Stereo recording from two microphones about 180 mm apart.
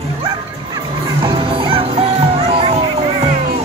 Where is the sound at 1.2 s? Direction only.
30° right (ahead or behind).